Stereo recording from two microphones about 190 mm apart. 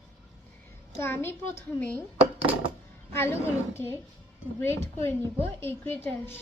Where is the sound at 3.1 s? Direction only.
15° left (ahead or behind).